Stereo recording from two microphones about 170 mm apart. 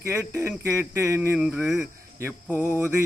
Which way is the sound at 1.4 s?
Centre (ahead or behind).